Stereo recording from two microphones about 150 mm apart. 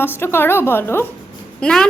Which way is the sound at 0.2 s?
15° left (ahead or behind).